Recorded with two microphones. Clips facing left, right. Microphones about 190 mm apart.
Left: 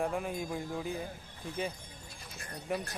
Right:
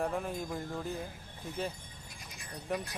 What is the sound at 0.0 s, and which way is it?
Speech, centre (ahead or behind).